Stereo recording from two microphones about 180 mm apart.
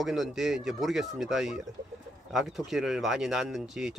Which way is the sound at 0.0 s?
Centre (ahead or behind).